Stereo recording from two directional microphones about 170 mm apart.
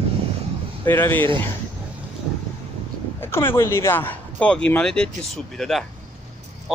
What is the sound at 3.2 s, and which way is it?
Speech, 15° left (ahead or behind).